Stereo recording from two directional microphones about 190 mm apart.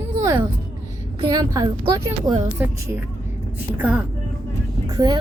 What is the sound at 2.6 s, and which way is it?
A woman's voice, 10° right (ahead or behind).